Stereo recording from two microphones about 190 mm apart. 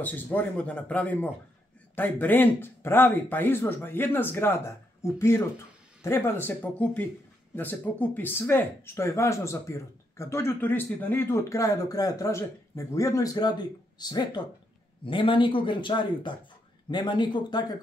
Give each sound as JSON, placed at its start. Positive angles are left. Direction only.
{"t": 0.0, "sound": "speech", "side_deg": 10}